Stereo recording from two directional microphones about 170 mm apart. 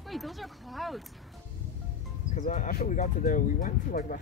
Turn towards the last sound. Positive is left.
turn(degrees=55)  # may be behind; listen again after turning